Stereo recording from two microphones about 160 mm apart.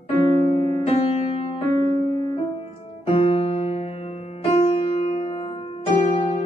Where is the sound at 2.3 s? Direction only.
35° left (ahead or behind).